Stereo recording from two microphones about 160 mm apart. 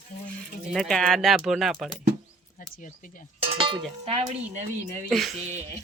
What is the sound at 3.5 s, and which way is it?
Cowbell, 30° right (ahead or behind).